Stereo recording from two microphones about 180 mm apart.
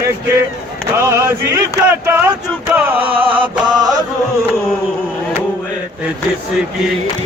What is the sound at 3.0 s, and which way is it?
Mantra, 30° right (ahead or behind).